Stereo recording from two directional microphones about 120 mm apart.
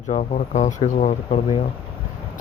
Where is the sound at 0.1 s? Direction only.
80° left.